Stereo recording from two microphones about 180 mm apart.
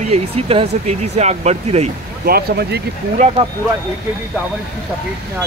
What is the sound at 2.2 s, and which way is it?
Speech, 60° right (ahead or behind).